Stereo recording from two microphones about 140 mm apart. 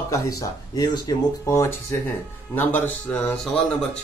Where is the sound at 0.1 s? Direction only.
25° left (ahead or behind).